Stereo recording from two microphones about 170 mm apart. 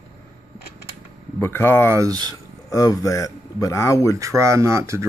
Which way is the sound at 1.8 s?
20° right (ahead or behind).